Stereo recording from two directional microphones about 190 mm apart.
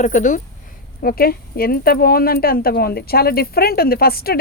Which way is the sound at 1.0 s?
50° left (ahead or behind).